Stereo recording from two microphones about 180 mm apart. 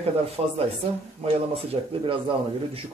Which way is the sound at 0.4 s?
35° right (ahead or behind).